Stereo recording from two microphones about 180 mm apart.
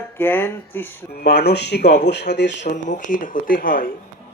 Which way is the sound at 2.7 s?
45° left (ahead or behind).